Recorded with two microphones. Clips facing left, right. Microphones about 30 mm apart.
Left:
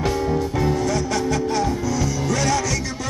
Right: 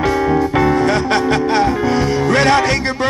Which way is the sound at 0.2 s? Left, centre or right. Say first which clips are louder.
Right 7 dB; right.